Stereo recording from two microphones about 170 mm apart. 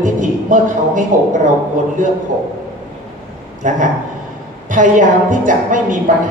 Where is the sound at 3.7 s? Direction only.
50° right (ahead or behind).